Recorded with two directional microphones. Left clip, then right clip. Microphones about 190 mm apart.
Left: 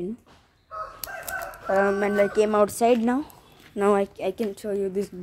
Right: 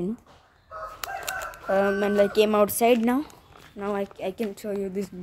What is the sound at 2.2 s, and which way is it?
Speech, 10° right (ahead or behind).